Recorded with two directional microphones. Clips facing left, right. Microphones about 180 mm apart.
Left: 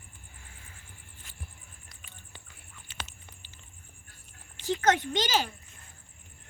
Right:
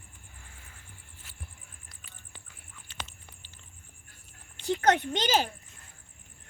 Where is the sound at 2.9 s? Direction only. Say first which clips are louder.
Even; 5° left (ahead or behind).